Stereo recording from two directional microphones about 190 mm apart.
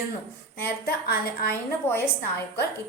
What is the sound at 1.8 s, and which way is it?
Speech, 10° left (ahead or behind).